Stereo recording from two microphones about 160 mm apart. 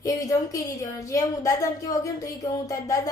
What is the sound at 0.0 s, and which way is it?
A woman's voice, 20° left (ahead or behind).